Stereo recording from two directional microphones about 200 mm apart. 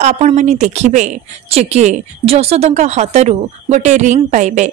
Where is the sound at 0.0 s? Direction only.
35° right (ahead or behind).